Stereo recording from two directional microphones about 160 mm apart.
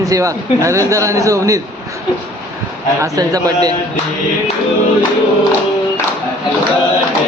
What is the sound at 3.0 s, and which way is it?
Speech, 20° right (ahead or behind).